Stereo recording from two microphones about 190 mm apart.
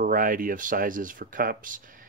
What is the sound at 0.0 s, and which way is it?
Speech, 45° right (ahead or behind).